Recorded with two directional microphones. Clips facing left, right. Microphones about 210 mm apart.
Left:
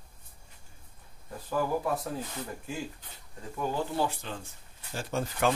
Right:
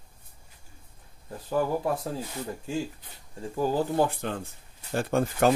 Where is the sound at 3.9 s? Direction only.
55° right (ahead or behind).